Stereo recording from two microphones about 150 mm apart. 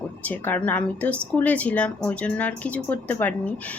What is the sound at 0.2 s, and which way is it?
A woman's voice, 10° left (ahead or behind).